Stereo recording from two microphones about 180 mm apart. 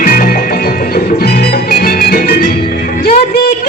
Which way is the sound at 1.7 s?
55° left (ahead or behind).